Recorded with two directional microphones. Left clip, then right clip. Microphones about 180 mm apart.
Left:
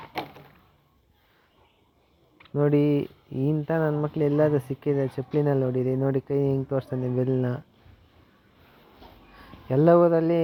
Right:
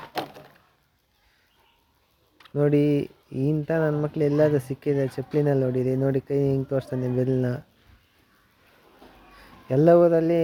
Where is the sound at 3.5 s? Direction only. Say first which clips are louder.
Right 1 dB; 10° right (ahead or behind).